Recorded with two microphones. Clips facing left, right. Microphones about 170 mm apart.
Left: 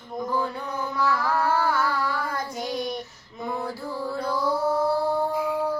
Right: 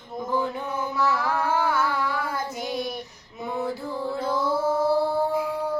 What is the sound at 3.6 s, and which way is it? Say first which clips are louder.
Music: right 2 dB; 20° right (ahead or behind).